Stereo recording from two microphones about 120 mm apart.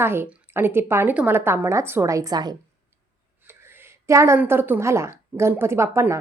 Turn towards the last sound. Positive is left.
turn(degrees=-25)  # may be behind; listen again after turning